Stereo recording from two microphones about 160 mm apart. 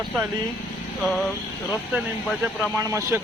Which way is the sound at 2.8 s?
20° right (ahead or behind).